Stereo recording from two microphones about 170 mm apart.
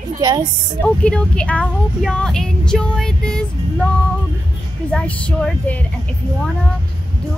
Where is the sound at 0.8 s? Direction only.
5° left (ahead or behind).